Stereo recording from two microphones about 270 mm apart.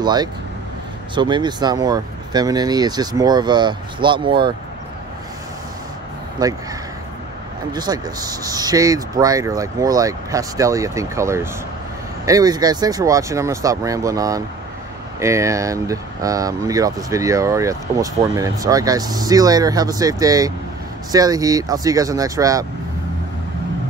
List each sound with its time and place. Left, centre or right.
0.0 s speech: centre
6.4 s speech: centre
7.7 s speech: centre